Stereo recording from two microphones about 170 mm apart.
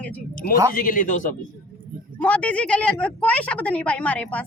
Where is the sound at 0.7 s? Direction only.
55° left (ahead or behind).